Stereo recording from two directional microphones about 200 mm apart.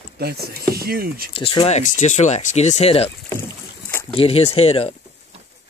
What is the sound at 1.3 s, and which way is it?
Speech, 25° left (ahead or behind).